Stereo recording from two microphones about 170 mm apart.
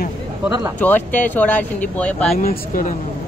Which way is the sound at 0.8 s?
10° left (ahead or behind).